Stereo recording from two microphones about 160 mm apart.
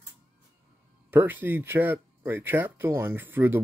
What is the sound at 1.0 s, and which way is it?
Speech, 10° right (ahead or behind).